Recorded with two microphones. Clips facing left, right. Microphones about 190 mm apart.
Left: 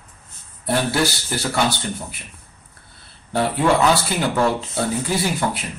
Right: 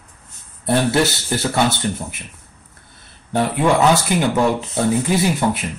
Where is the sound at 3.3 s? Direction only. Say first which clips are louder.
Right 1 dB; 20° right (ahead or behind).